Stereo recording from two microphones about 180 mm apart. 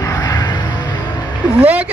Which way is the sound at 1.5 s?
10° right (ahead or behind).